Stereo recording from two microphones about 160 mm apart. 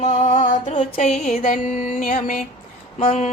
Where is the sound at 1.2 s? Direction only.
45° left (ahead or behind).